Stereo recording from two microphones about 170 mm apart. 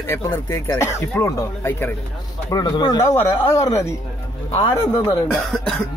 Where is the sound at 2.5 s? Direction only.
25° left (ahead or behind).